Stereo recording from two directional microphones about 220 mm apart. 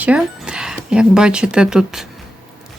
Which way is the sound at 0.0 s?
5° right (ahead or behind).